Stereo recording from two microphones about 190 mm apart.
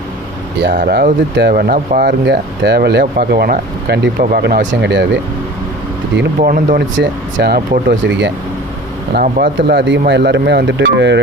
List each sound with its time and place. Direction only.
0.7 s speech: 50° right (ahead or behind)
6.4 s speech: 50° right (ahead or behind)
6.9 s speech: 70° right (ahead or behind)
9.1 s speech: 50° right (ahead or behind)
9.6 s speech: 65° right (ahead or behind)